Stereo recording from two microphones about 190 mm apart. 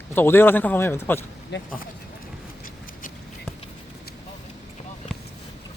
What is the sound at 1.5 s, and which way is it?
Speech, 65° left (ahead or behind).